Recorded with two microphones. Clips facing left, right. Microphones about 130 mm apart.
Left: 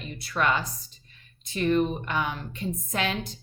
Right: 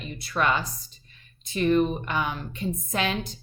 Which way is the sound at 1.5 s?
20° right (ahead or behind).